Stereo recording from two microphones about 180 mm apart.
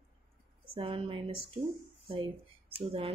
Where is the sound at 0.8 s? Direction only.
30° right (ahead or behind).